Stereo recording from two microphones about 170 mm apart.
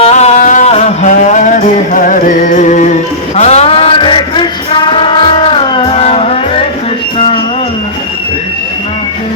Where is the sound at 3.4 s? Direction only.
40° left (ahead or behind).